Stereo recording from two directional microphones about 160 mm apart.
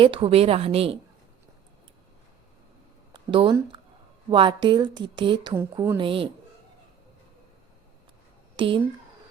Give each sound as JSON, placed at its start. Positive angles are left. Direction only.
{"t": 0.0, "sound": "a woman's voice", "side_deg": -35}
{"t": 3.1, "sound": "a sound", "side_deg": -30}
{"t": 4.3, "sound": "a woman's voice", "side_deg": -30}
{"t": 5.7, "sound": "a woman's voice", "side_deg": -15}
{"t": 6.0, "sound": "a woman's voice", "side_deg": -35}
{"t": 8.5, "sound": "speech", "side_deg": -30}